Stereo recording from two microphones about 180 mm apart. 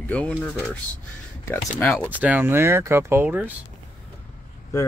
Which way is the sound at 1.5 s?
10° left (ahead or behind).